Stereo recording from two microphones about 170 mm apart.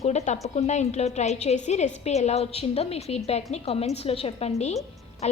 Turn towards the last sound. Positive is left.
turn(degrees=40)  # may be behind; listen again after turning